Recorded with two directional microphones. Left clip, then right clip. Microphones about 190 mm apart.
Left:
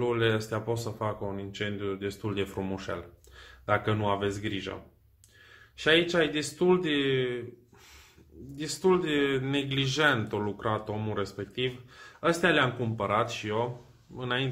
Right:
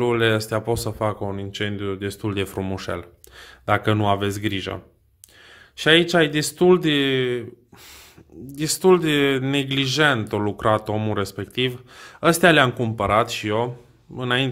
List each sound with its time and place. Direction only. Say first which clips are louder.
0.0 s speech: right 8 dB; 50° right (ahead or behind)
5.8 s speech: right 8 dB; 55° right (ahead or behind)
8.5 s speech: right 9 dB; 55° right (ahead or behind)